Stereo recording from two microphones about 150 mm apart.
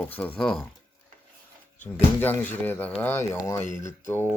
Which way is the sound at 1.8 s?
10° left (ahead or behind).